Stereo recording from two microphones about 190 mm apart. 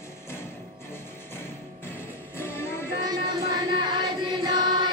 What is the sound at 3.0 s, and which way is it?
Music, 20° right (ahead or behind).